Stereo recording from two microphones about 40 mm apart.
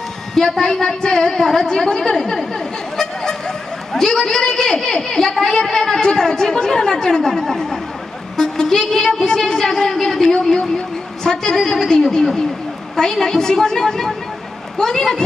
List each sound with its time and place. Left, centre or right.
0.3 s a woman's voice: centre
3.0 s a sound: centre
5.4 s a woman's voice: centre